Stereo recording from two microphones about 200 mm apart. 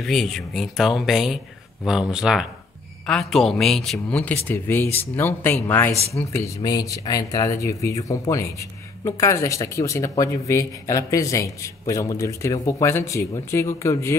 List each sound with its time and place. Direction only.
0.0 s speech: centre (ahead or behind)